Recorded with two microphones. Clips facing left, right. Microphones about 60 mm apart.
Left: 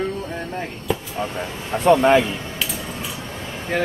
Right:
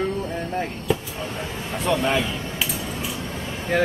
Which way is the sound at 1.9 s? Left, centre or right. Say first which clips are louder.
Left 8 dB; left.